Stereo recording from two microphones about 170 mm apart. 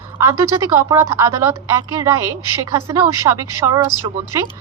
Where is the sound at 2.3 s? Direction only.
25° left (ahead or behind).